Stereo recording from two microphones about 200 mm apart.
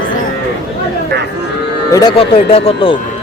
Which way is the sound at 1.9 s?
20° left (ahead or behind).